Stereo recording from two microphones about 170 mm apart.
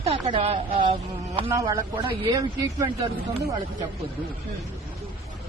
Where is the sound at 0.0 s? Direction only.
35° right (ahead or behind).